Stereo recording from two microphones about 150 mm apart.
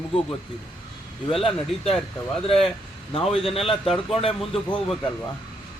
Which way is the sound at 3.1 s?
40° left (ahead or behind).